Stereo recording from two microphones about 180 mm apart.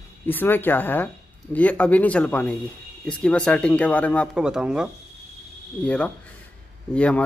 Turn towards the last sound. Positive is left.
turn(degrees=5)  # may be behind; listen again after turning